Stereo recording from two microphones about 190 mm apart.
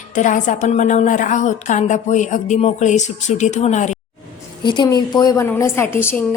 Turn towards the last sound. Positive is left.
turn(degrees=10)  # may be behind; listen again after turning